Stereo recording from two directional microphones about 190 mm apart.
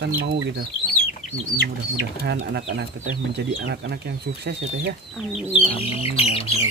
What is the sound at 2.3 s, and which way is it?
Speech, 65° right (ahead or behind).